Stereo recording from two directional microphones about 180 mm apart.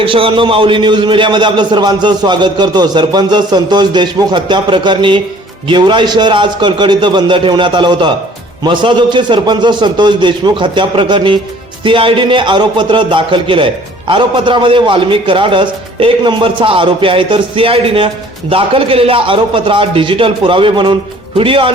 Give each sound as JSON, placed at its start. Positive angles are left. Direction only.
{"t": 0.0, "sound": "a man's voice", "side_deg": -30}